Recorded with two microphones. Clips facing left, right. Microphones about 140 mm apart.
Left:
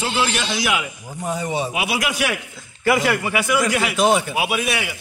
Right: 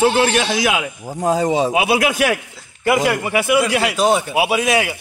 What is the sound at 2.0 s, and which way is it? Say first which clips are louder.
Speech: right 6 dB; 45° right (ahead or behind).